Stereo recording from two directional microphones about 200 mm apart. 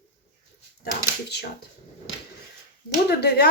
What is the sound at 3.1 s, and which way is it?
Speech, 55° left (ahead or behind).